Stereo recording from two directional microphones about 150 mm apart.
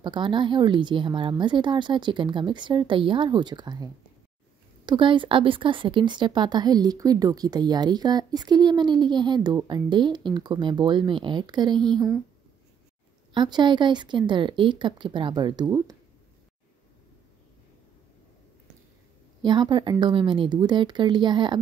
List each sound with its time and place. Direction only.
0.0 s speech: 30° right (ahead or behind)
13.3 s speech: 30° right (ahead or behind)
19.4 s speech: 30° right (ahead or behind)